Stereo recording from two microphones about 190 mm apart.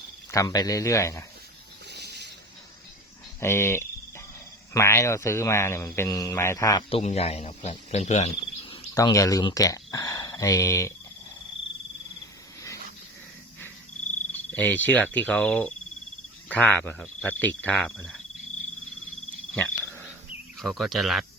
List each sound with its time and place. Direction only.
0.3 s speech: 20° left (ahead or behind)
1.9 s a sound: 60° right (ahead or behind)
3.4 s speech: 15° left (ahead or behind)
6.9 s speech: 35° left (ahead or behind); by 10.9 s 15° left (ahead or behind)
14.5 s speech: 10° left (ahead or behind)
19.5 s cricket: 5° left (ahead or behind)
20.6 s speech: centre (ahead or behind)